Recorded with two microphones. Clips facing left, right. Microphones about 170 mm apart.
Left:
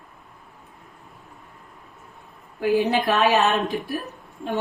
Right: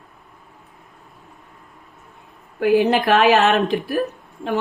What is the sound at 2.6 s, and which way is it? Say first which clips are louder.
A woman's voice: right 4 dB; 70° right (ahead or behind).